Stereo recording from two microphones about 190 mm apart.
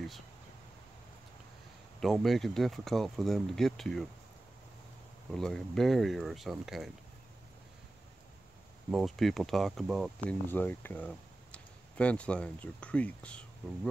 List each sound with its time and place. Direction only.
2.0 s speech: centre (ahead or behind)
5.3 s speech: centre (ahead or behind)
8.9 s speech: centre (ahead or behind)
10.5 s speech: 10° left (ahead or behind)